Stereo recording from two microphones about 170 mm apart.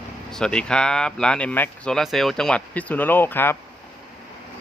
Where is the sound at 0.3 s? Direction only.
5° left (ahead or behind).